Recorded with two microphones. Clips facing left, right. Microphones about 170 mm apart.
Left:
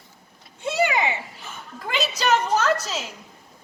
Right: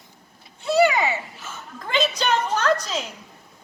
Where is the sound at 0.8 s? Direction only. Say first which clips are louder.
Right 4 dB; 20° left (ahead or behind).